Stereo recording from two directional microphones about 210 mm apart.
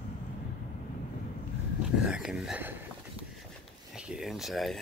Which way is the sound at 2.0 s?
5° right (ahead or behind).